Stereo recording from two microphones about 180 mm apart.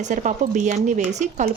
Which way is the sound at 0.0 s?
45° right (ahead or behind).